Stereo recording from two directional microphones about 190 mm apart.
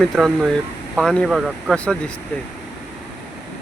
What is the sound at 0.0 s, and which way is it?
Speech, centre (ahead or behind).